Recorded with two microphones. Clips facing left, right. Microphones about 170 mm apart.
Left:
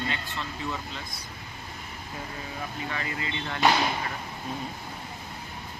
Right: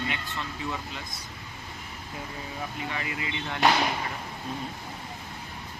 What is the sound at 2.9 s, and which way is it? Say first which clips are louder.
Speech: even; 15° right (ahead or behind).